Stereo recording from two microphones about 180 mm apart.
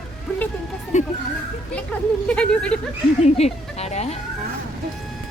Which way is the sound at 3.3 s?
35° left (ahead or behind).